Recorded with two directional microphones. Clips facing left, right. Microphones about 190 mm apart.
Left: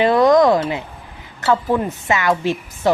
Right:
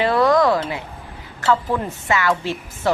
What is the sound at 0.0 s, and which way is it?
Speech, 20° left (ahead or behind).